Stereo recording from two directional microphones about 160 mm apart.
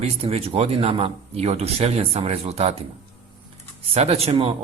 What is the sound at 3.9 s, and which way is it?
Speech, 40° right (ahead or behind).